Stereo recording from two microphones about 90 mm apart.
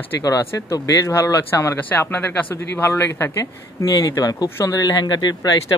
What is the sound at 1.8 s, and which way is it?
Speech, 20° left (ahead or behind).